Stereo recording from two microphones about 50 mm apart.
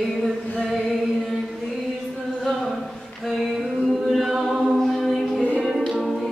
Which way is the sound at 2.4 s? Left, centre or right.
Centre.